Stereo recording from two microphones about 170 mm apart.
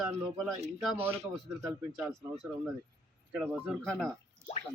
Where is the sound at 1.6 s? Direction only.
20° right (ahead or behind).